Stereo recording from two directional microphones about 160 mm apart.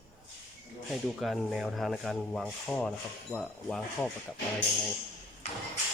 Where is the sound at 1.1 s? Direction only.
Centre (ahead or behind).